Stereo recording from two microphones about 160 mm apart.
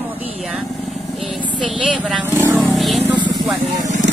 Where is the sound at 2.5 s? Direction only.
Centre (ahead or behind).